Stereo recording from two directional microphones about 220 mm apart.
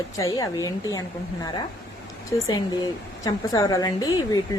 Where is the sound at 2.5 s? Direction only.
15° left (ahead or behind).